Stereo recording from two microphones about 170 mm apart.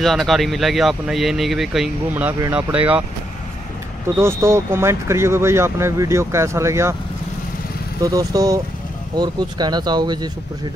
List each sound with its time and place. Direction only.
0.0 s speech: centre (ahead or behind)
4.2 s speech: 15° right (ahead or behind)
8.0 s speech: 20° right (ahead or behind)